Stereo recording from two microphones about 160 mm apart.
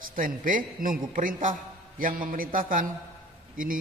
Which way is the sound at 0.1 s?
60° right (ahead or behind).